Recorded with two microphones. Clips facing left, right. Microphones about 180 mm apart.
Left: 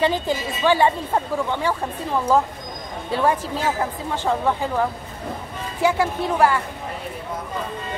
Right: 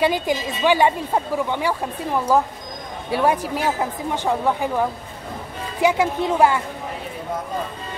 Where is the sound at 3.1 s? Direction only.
10° right (ahead or behind).